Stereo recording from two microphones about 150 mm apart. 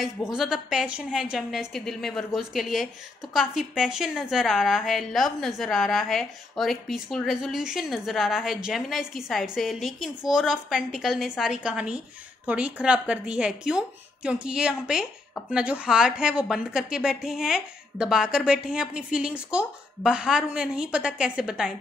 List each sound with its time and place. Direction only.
0.0 s a woman's voice: 5° right (ahead or behind)